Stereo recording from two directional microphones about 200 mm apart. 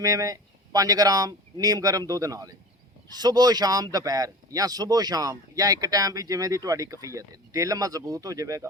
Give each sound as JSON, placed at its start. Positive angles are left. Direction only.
{"t": 0.0, "sound": "speech", "side_deg": -15}